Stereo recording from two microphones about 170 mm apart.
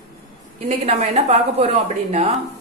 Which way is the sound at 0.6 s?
40° right (ahead or behind).